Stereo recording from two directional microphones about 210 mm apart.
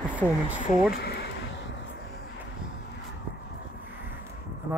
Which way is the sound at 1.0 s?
50° left (ahead or behind).